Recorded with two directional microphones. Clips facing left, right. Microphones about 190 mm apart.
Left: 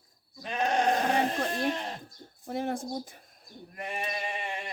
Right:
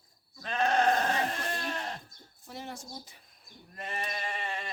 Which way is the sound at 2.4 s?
55° left (ahead or behind).